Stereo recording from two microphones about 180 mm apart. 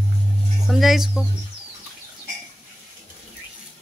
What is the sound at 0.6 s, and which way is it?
Speech, centre (ahead or behind).